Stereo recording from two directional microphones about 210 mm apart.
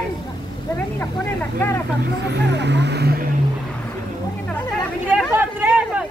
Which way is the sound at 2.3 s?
55° right (ahead or behind).